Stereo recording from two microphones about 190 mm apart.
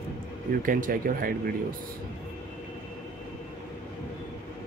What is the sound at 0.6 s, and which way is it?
Speech, 45° right (ahead or behind).